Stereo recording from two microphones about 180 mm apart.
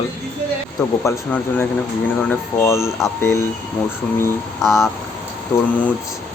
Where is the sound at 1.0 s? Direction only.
15° left (ahead or behind).